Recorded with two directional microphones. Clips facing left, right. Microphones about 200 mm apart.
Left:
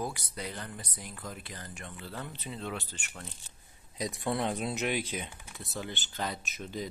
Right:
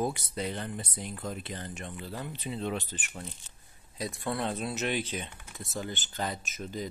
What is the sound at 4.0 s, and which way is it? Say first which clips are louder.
Speech: left 1 dB; 20° left (ahead or behind).